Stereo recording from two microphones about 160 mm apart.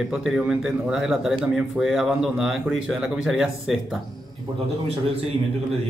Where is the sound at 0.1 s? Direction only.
5° right (ahead or behind).